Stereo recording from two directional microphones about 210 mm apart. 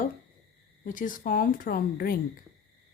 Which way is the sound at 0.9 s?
40° left (ahead or behind).